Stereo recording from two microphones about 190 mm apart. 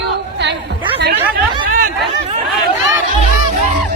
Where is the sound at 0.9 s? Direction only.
60° right (ahead or behind).